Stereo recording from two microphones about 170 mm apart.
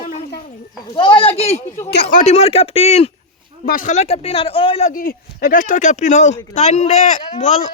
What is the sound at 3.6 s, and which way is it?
Speech, 50° left (ahead or behind).